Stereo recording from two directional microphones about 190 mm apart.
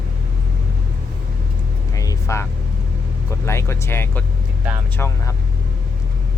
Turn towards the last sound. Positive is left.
turn(degrees=15)  # may be behind; listen again after turning